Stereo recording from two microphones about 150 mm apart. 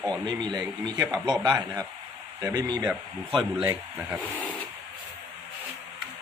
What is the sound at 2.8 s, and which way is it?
Speech, centre (ahead or behind).